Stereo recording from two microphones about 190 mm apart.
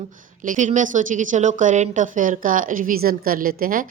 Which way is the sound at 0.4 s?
40° right (ahead or behind).